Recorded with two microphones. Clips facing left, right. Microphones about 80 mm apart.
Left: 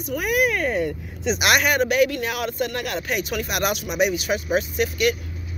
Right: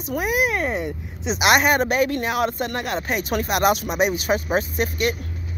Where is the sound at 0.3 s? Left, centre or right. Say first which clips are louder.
Left 2 dB; centre.